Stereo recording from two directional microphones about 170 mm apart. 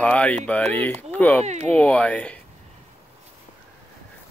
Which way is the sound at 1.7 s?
5° left (ahead or behind).